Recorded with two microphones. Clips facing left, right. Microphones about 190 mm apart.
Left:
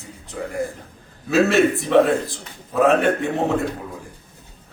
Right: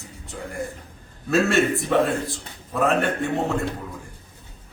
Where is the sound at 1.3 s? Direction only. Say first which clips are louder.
Left 3 dB; centre (ahead or behind).